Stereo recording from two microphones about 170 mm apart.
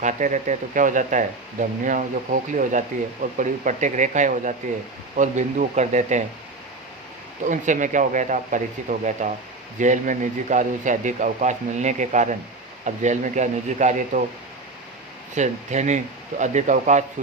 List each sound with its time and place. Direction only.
0.0 s speech: 45° right (ahead or behind)
7.4 s speech: 45° right (ahead or behind)
15.4 s speech: 45° right (ahead or behind)